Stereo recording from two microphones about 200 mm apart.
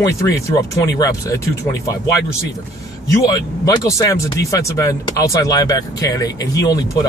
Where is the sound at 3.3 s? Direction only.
15° left (ahead or behind).